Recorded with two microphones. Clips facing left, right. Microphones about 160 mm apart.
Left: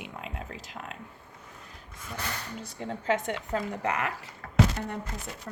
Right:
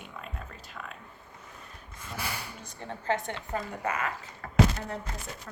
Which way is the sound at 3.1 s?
75° left (ahead or behind).